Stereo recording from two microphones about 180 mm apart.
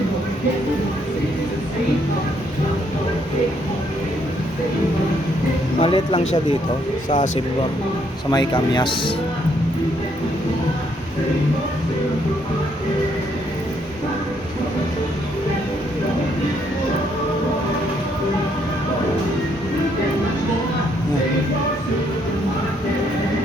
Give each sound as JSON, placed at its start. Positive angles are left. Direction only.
{"t": 5.8, "sound": "speech", "side_deg": 30}
{"t": 8.3, "sound": "speech", "side_deg": 25}